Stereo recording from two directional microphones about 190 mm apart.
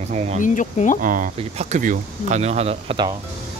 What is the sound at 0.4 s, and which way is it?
Speech, 40° left (ahead or behind).